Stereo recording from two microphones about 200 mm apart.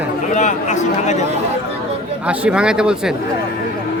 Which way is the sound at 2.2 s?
5° right (ahead or behind).